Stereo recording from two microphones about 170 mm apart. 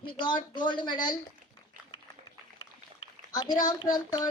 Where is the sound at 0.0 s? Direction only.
30° left (ahead or behind).